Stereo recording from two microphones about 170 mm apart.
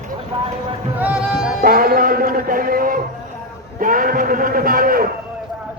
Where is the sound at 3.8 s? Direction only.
55° right (ahead or behind).